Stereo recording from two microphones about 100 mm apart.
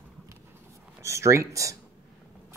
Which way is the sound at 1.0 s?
30° right (ahead or behind).